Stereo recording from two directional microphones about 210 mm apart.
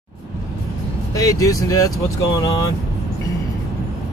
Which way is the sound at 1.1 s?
15° left (ahead or behind).